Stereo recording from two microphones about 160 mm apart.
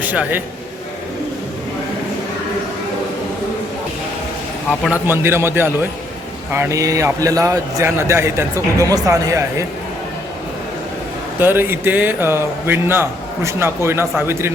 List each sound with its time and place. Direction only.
0.0 s a man's voice: 10° right (ahead or behind)
4.7 s a man's voice: 10° left (ahead or behind)
5.0 s a man's voice: 15° right (ahead or behind)
11.3 s a man's voice: 15° right (ahead or behind)